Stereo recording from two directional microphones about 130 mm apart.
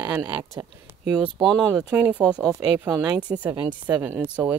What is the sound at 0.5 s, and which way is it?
Speech, 25° right (ahead or behind).